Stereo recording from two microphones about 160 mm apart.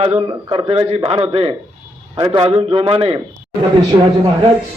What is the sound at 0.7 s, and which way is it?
A man's voice, 40° right (ahead or behind).